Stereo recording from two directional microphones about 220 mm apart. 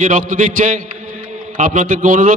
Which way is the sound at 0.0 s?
40° right (ahead or behind).